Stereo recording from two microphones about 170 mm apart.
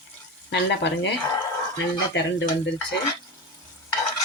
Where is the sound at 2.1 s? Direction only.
90° left.